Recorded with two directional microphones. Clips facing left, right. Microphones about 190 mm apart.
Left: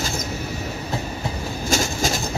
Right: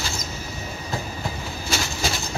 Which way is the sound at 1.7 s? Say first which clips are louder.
Left 5 dB; 45° left (ahead or behind).